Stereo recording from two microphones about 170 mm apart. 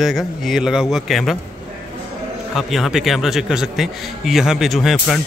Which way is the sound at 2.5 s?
Centre (ahead or behind).